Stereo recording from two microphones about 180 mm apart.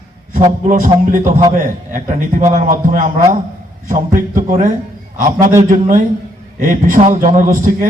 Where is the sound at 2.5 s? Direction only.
45° right (ahead or behind).